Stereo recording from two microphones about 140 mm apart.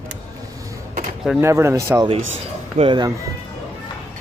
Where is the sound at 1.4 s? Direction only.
20° right (ahead or behind).